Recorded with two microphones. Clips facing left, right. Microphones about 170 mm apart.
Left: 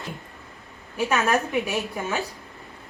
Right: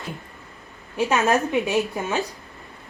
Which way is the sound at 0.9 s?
20° right (ahead or behind).